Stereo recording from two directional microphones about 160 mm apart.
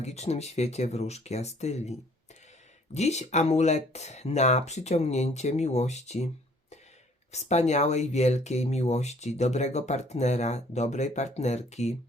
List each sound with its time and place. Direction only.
0.0 s speech: 45° left (ahead or behind)
7.3 s speech: 45° left (ahead or behind)